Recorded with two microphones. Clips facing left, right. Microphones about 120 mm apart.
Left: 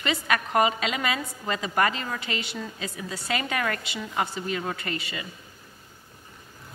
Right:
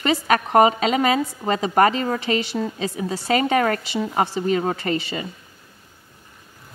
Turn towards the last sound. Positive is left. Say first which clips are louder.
# right 9 dB
turn(degrees=-30)  # may be behind; listen again after turning